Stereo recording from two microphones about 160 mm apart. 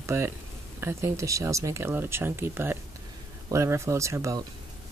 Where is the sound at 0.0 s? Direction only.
15° right (ahead or behind).